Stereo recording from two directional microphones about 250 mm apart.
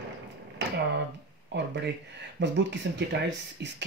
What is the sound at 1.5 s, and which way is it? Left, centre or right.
Speech, right.